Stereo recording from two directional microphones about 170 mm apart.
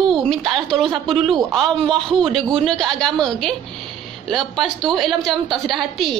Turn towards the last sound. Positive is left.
turn(degrees=0)  # may be behind; listen again after turning